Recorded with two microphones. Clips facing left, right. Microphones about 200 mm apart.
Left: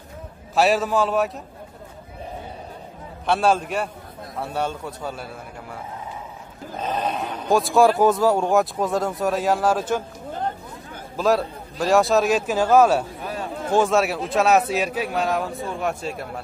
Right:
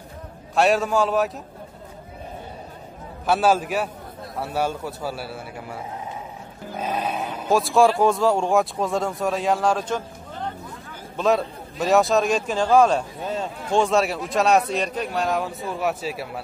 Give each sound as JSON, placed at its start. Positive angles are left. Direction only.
{"t": 0.6, "sound": "speech", "side_deg": 0}
{"t": 3.3, "sound": "a man's voice", "side_deg": -5}
{"t": 6.8, "sound": "speech", "side_deg": -10}
{"t": 11.1, "sound": "speech", "side_deg": 0}
{"t": 13.2, "sound": "a sound", "side_deg": -25}
{"t": 13.7, "sound": "speech", "side_deg": 0}